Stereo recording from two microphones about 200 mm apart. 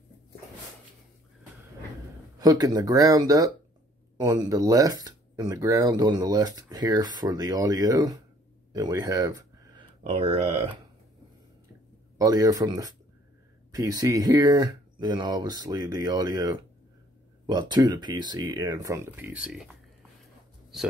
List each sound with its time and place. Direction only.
2.3 s speech: 20° right (ahead or behind)
8.7 s a sound: 20° right (ahead or behind)
10.0 s speech: 30° right (ahead or behind)
12.2 s speech: 20° right (ahead or behind); by 20.9 s centre (ahead or behind)